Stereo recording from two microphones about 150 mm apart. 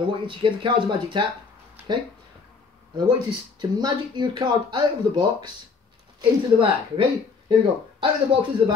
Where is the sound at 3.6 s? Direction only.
30° right (ahead or behind).